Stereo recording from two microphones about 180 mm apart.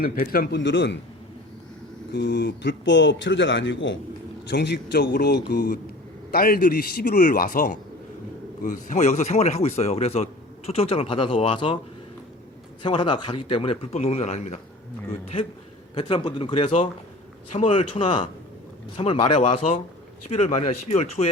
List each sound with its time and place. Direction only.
0.0 s a man's voice: 55° left (ahead or behind); by 0.9 s 80° left
2.1 s speech: 65° left (ahead or behind); by 3.9 s 90° left
4.5 s a man's voice: 70° left (ahead or behind); by 11.8 s 30° left (ahead or behind)
12.8 s a man's voice: 25° left (ahead or behind)
16.0 s a man's voice: 25° left (ahead or behind)